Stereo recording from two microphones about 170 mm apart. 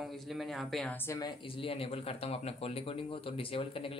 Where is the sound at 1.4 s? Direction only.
30° left (ahead or behind).